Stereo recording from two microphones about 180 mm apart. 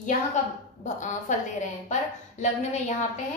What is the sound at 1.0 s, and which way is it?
Speech, 40° left (ahead or behind).